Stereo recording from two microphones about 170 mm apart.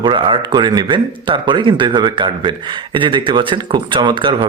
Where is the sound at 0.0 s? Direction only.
30° right (ahead or behind).